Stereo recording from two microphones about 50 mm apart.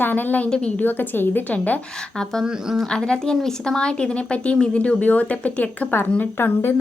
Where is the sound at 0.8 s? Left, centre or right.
Left.